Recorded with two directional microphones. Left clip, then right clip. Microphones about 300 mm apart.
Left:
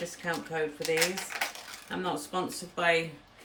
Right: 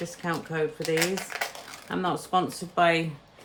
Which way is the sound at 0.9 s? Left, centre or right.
Centre.